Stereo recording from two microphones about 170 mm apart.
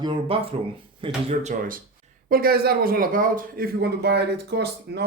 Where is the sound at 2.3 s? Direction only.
60° right (ahead or behind).